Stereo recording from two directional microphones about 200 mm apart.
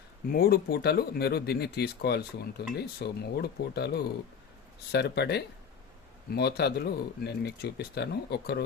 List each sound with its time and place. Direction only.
0.3 s speech: 50° left (ahead or behind)